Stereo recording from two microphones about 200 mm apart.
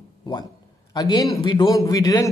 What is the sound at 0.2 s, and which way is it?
A man's voice, 20° left (ahead or behind).